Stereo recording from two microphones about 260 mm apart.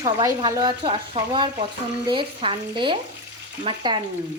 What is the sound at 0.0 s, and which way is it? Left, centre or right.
Speech, centre.